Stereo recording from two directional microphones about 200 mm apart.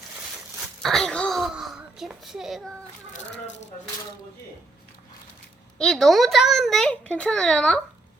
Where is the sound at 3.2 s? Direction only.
60° left (ahead or behind).